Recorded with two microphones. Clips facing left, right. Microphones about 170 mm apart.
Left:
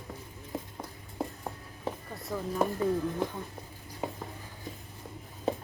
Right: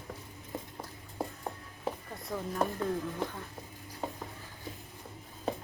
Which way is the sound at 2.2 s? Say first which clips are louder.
Left 4 dB; centre (ahead or behind).